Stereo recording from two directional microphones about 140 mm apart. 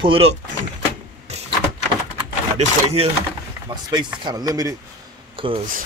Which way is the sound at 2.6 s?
50° right (ahead or behind).